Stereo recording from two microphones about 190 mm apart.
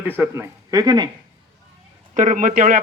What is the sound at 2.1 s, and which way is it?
Speech, 40° right (ahead or behind).